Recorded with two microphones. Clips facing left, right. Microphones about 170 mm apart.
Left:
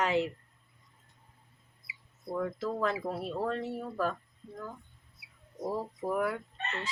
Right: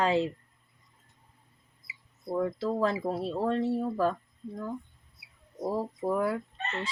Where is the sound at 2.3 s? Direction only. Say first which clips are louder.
Right 4 dB; 30° right (ahead or behind).